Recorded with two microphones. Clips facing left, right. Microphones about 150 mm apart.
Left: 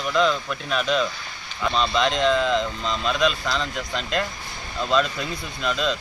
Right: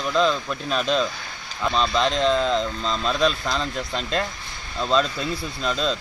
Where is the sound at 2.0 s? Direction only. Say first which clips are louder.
Left 1 dB; 35° right (ahead or behind).